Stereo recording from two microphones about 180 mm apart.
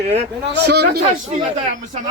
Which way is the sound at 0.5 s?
65° right (ahead or behind).